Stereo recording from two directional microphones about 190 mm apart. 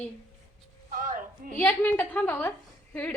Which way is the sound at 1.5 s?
10° left (ahead or behind).